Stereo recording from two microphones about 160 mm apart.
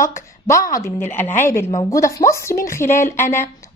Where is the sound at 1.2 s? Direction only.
50° left (ahead or behind).